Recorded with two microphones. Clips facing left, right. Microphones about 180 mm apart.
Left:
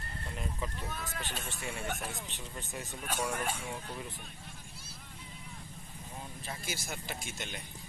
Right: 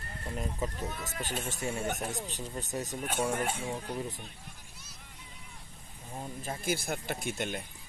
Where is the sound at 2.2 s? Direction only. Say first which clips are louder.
Right 6 dB; 40° right (ahead or behind).